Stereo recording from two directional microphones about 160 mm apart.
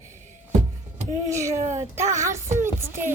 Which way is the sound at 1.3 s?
20° right (ahead or behind).